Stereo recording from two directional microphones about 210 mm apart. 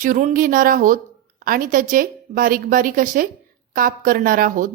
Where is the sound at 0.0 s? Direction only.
40° right (ahead or behind).